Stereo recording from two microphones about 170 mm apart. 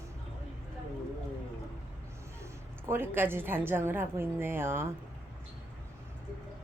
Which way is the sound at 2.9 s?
15° right (ahead or behind).